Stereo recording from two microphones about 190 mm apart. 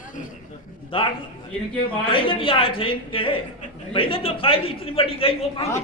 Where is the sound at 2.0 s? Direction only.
30° left (ahead or behind).